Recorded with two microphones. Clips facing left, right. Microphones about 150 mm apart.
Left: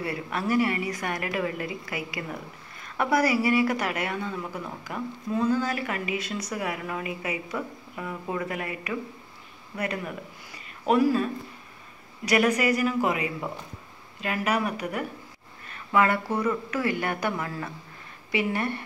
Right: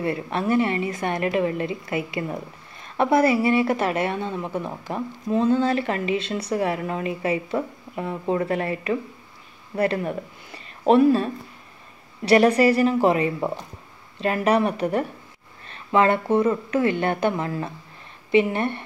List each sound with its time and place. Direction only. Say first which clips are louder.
0.0 s a woman's voice: right 5 dB; 25° right (ahead or behind)
12.3 s a woman's voice: right 7 dB; 30° right (ahead or behind)